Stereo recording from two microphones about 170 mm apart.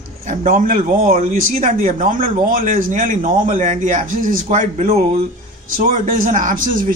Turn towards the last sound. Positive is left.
turn(degrees=-55)  # may be behind; listen again after turning